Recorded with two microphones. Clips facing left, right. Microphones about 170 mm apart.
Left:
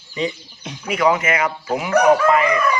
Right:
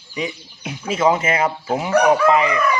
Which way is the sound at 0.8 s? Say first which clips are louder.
Even; 25° right (ahead or behind).